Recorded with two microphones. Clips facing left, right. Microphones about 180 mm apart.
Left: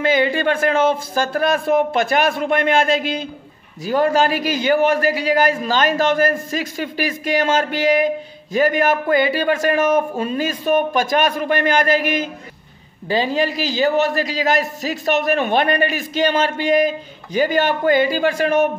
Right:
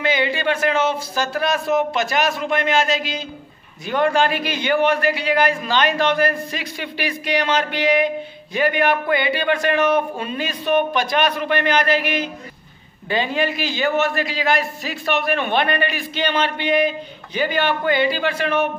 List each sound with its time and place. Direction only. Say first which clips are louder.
0.0 s a man's voice: left 4 dB; 45° left (ahead or behind)
3.8 s a man's voice: left 2 dB; 40° left (ahead or behind)